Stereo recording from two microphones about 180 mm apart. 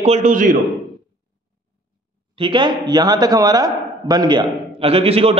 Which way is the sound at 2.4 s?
25° right (ahead or behind).